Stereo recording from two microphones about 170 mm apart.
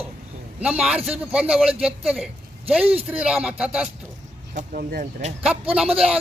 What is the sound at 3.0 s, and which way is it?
Speech, 5° right (ahead or behind).